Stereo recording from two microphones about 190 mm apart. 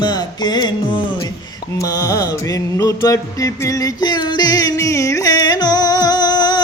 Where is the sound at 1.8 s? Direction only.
20° left (ahead or behind).